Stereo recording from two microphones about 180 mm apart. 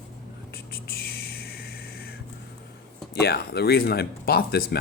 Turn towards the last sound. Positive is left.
turn(degrees=55)  # may be behind; listen again after turning